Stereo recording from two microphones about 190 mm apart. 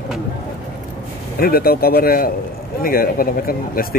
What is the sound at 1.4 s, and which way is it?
Speech, 50° left (ahead or behind).